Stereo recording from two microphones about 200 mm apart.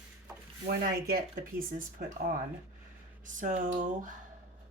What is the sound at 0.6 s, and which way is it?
Speech, 50° right (ahead or behind).